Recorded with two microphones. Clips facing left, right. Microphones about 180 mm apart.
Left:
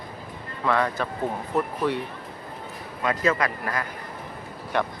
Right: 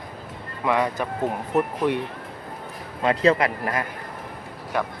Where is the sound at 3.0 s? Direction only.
25° right (ahead or behind).